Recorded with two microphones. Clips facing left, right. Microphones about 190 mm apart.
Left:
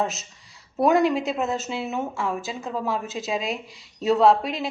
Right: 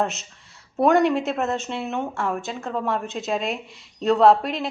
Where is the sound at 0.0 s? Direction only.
Centre (ahead or behind).